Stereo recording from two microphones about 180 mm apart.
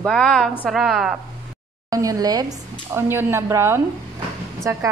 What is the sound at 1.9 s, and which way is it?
A woman's voice, 20° right (ahead or behind).